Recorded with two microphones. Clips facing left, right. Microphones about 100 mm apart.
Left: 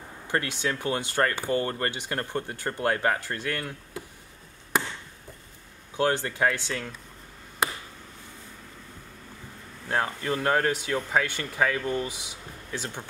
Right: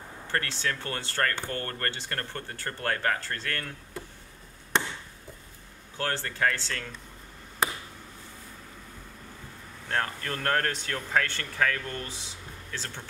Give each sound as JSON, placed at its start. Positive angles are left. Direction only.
{"t": 0.3, "sound": "speech", "side_deg": 15}
{"t": 4.7, "sound": "chop", "side_deg": 5}
{"t": 5.9, "sound": "speech", "side_deg": 15}
{"t": 9.8, "sound": "speech", "side_deg": 15}